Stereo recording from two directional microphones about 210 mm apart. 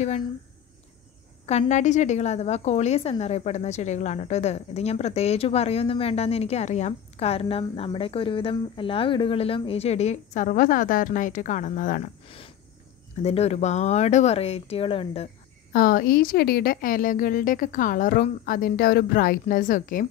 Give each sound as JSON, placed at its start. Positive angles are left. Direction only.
{"t": 1.4, "sound": "a woman's voice", "side_deg": 30}
{"t": 12.3, "sound": "a sound", "side_deg": 25}
{"t": 13.2, "sound": "speech", "side_deg": 30}
{"t": 15.7, "sound": "a woman's voice", "side_deg": 45}